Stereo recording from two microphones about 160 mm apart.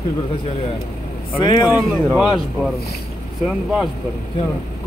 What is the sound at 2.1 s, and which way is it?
Speech, 5° right (ahead or behind).